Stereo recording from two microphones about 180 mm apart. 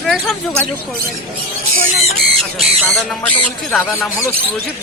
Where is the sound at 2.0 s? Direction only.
Centre (ahead or behind).